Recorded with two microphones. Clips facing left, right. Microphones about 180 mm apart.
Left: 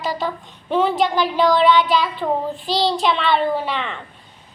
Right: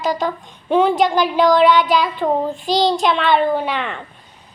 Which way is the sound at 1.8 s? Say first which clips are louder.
Right 2 dB; centre (ahead or behind).